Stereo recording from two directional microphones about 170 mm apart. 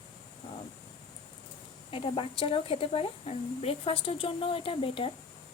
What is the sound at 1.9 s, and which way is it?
Speech, 30° left (ahead or behind).